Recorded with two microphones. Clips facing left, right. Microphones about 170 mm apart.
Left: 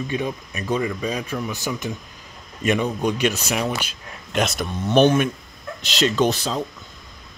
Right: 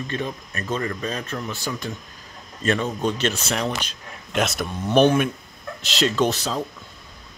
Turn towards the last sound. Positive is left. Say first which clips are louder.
# left 2 dB
turn(degrees=0)  # may be behind; listen again after turning